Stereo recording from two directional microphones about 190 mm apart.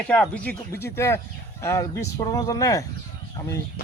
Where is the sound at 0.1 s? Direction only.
10° left (ahead or behind).